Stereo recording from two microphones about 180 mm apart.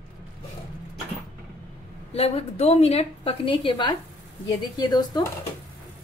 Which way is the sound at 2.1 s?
35° left (ahead or behind).